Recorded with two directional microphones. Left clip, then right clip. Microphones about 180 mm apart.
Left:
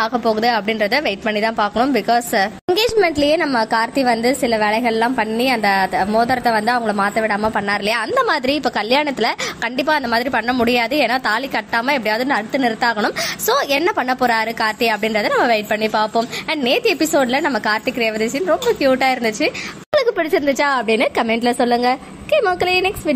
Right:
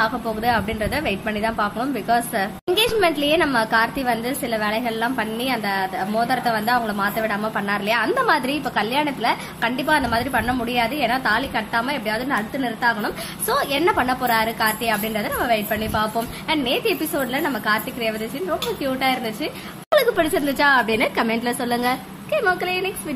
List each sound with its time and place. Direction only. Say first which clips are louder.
0.0 s a woman's voice: left 5 dB; 25° left (ahead or behind); by 23.1 s 50° left (ahead or behind)